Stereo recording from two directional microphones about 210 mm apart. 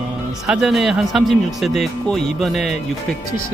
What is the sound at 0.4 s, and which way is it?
Speech, 5° right (ahead or behind).